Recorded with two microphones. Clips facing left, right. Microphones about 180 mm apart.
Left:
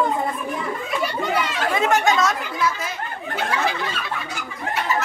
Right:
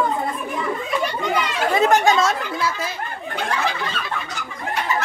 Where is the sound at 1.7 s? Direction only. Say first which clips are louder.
Right 3 dB; 35° right (ahead or behind).